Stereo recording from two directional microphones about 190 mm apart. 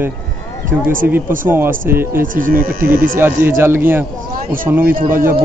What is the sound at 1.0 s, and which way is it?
A man's voice, 10° right (ahead or behind).